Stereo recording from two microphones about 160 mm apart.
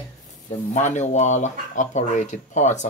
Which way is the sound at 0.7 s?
45° left (ahead or behind).